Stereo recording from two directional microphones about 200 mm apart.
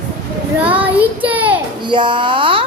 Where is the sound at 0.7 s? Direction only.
10° right (ahead or behind).